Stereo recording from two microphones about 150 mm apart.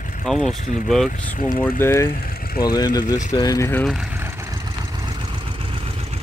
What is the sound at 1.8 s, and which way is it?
Speech, 15° left (ahead or behind).